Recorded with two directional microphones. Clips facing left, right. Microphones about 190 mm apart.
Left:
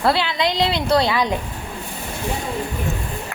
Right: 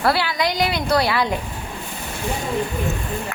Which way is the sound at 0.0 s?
20° left (ahead or behind).